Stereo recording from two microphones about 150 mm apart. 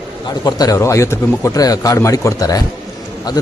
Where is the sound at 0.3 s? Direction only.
25° left (ahead or behind).